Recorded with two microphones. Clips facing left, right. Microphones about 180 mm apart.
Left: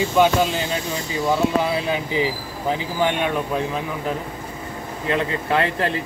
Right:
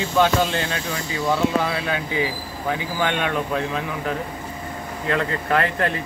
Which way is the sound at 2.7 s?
20° left (ahead or behind).